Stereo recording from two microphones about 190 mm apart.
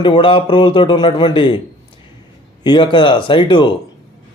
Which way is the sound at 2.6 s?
25° left (ahead or behind).